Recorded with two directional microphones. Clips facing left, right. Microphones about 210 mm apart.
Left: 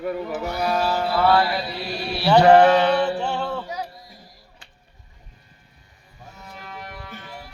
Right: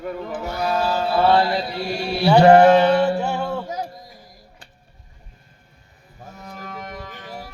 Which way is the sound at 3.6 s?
45° right (ahead or behind).